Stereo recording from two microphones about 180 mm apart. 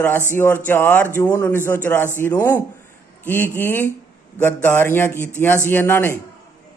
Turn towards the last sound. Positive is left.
turn(degrees=15)  # may be behind; listen again after turning